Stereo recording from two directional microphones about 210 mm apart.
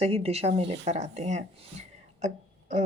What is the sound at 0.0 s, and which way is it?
A woman's voice, 30° right (ahead or behind).